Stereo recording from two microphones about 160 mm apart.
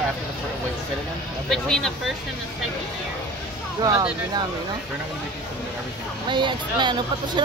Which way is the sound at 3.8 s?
25° right (ahead or behind).